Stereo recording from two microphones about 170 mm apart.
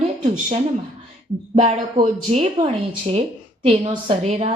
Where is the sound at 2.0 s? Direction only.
40° right (ahead or behind).